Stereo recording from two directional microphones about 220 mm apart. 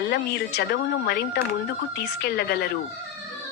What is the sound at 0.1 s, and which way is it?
A woman's voice, 50° left (ahead or behind).